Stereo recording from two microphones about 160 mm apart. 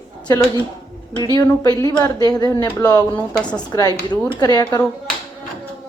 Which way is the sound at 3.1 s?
5° left (ahead or behind).